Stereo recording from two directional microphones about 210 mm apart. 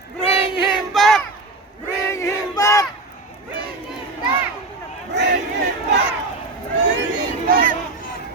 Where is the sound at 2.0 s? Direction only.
15° left (ahead or behind).